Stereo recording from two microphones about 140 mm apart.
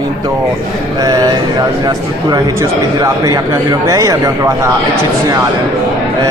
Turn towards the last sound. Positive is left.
turn(degrees=-20)  # may be behind; listen again after turning